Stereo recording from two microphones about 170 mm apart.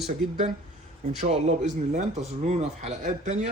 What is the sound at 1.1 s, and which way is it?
Speech, 40° right (ahead or behind).